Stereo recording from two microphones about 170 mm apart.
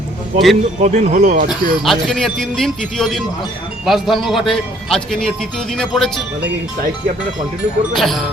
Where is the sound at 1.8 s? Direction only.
Centre (ahead or behind).